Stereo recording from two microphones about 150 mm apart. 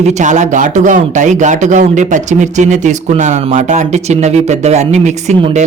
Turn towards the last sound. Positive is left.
turn(degrees=-50)  # may be behind; listen again after turning